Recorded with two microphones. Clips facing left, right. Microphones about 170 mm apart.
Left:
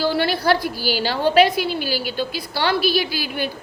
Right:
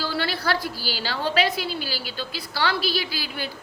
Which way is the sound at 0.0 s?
15° left (ahead or behind).